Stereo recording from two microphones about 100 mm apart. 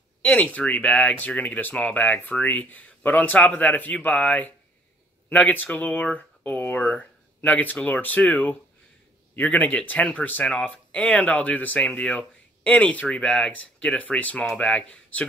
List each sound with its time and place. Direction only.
0.2 s speech: 15° left (ahead or behind)